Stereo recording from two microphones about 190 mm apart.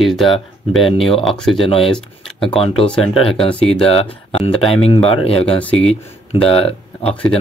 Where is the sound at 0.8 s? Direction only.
30° left (ahead or behind).